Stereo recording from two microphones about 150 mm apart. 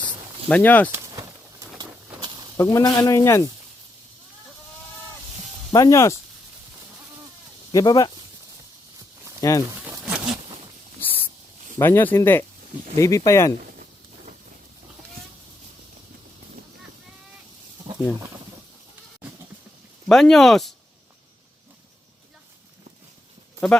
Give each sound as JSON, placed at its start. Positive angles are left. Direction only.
{"t": 0.4, "sound": "speech", "side_deg": 10}
{"t": 0.9, "sound": "a sound", "side_deg": -20}
{"t": 2.6, "sound": "speech", "side_deg": 25}
{"t": 5.7, "sound": "speech", "side_deg": 20}
{"t": 7.7, "sound": "speech", "side_deg": 25}
{"t": 9.4, "sound": "speech", "side_deg": 20}
{"t": 10.0, "sound": "zipper", "side_deg": -5}
{"t": 11.0, "sound": "a sound", "side_deg": 15}
{"t": 11.8, "sound": "speech", "side_deg": 15}
{"t": 20.1, "sound": "speech", "side_deg": 0}